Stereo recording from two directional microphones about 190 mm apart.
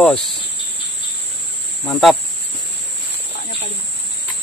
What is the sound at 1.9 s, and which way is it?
Speech, centre (ahead or behind).